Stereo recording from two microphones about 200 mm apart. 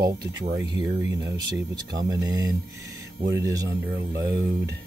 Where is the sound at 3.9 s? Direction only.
55° right (ahead or behind).